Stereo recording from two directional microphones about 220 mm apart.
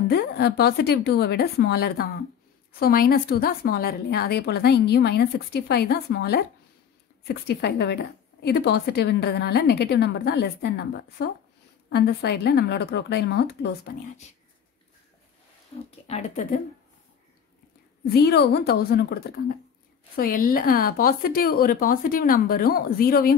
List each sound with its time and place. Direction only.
0.1 s a woman's voice: 45° left (ahead or behind)
16.1 s speech: 35° left (ahead or behind)
18.1 s a woman's voice: 45° left (ahead or behind)